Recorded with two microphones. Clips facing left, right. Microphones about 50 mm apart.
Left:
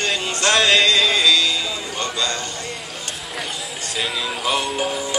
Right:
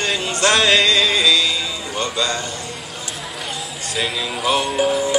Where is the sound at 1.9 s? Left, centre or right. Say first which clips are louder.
Right 4 dB; centre.